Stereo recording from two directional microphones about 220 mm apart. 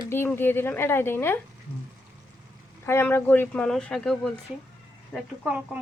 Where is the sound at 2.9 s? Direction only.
10° left (ahead or behind).